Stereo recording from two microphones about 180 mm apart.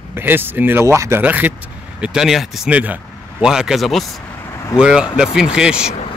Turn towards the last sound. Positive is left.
turn(degrees=-5)  # may be behind; listen again after turning